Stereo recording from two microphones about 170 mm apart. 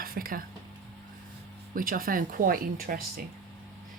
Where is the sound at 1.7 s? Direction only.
55° right (ahead or behind).